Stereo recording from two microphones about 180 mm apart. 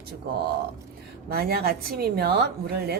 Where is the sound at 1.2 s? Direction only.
60° right (ahead or behind).